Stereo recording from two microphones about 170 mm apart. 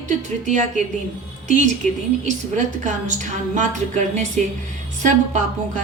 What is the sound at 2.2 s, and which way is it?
A woman's voice, 45° right (ahead or behind).